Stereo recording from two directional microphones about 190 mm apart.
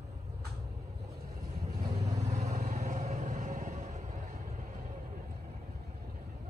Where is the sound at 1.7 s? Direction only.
35° right (ahead or behind).